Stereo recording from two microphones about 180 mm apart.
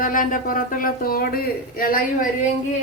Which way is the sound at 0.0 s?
50° left (ahead or behind).